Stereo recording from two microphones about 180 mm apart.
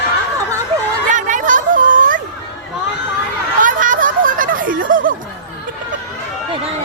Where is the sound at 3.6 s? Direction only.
45° right (ahead or behind).